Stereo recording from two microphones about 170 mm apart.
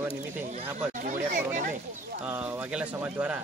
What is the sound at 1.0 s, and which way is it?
Speech, 50° right (ahead or behind).